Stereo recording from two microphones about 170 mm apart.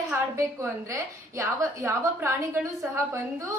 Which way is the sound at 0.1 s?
15° right (ahead or behind).